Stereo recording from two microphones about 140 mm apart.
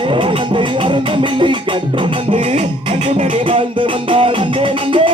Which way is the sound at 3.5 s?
40° right (ahead or behind).